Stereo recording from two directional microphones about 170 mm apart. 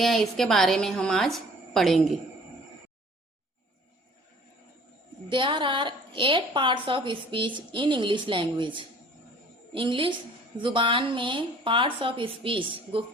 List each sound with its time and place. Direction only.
0.0 s a woman's voice: centre (ahead or behind)
5.3 s a woman's voice: 30° right (ahead or behind)